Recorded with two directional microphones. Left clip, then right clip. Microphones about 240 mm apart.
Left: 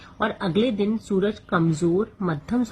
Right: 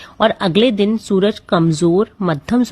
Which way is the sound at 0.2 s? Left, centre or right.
Right.